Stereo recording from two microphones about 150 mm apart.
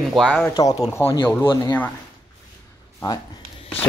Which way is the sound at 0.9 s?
20° left (ahead or behind).